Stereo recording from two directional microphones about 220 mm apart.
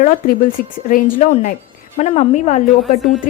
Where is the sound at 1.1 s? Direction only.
30° left (ahead or behind).